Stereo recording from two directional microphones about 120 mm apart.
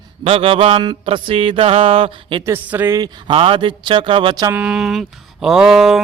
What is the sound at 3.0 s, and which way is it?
Mantra, 45° right (ahead or behind).